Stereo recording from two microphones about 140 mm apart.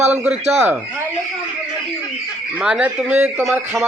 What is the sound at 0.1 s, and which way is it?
Speech, 10° right (ahead or behind).